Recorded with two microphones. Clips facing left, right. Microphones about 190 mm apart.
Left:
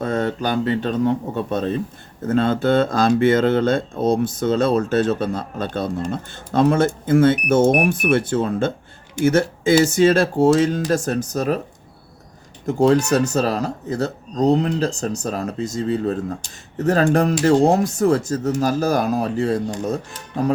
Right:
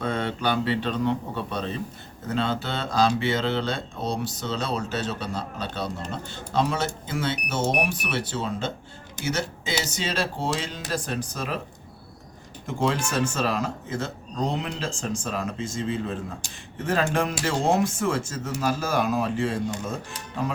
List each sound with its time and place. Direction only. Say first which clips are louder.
0.0 s speech: left 5 dB; 40° left (ahead or behind)
12.6 s speech: left 10 dB; 40° left (ahead or behind)